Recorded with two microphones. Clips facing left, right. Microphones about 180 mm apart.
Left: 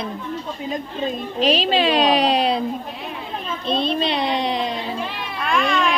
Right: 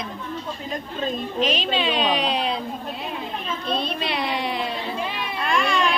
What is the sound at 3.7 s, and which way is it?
Speech, 25° left (ahead or behind).